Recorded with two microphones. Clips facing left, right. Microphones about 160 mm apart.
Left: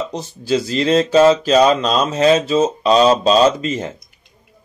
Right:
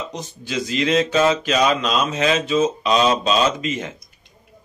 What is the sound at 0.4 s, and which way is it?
Speech, 35° left (ahead or behind).